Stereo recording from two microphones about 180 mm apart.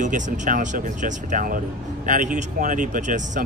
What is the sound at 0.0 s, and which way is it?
Speech, 45° right (ahead or behind).